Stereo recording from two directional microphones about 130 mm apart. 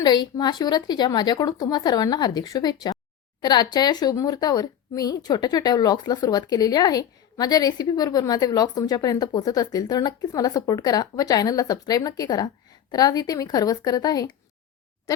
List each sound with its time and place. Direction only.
0.0 s speech: 30° left (ahead or behind)